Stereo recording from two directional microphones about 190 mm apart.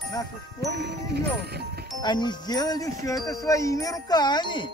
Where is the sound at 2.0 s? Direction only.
25° left (ahead or behind).